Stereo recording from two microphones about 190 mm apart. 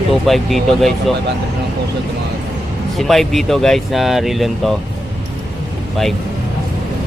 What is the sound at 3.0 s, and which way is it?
Speech, centre (ahead or behind).